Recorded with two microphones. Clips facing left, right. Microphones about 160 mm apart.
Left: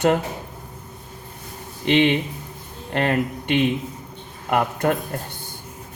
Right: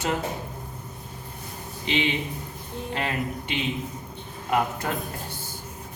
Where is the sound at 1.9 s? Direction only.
60° left (ahead or behind).